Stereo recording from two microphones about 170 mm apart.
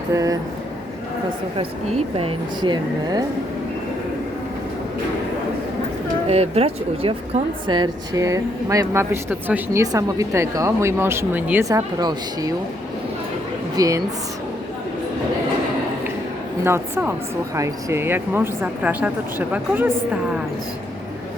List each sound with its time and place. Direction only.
0.1 s a woman's voice: 20° right (ahead or behind)
1.5 s speech: 35° right (ahead or behind)
6.2 s a woman's voice: 40° right (ahead or behind); by 12.5 s 20° right (ahead or behind)
13.7 s a woman's voice: 20° right (ahead or behind)
16.6 s speech: 15° right (ahead or behind)